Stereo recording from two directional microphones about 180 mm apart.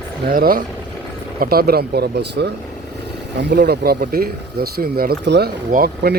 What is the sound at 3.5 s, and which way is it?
Speech, 60° right (ahead or behind).